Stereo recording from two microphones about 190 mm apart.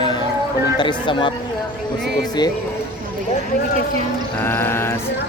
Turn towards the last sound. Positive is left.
turn(degrees=15)  # may be behind; listen again after turning